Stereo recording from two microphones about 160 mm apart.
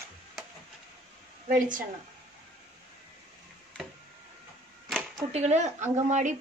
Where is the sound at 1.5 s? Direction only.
60° right (ahead or behind).